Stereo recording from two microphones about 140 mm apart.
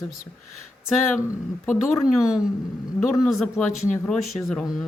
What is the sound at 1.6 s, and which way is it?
Speech, 15° left (ahead or behind).